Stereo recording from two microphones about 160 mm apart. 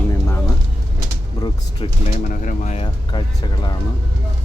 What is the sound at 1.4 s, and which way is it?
Speech, 25° left (ahead or behind).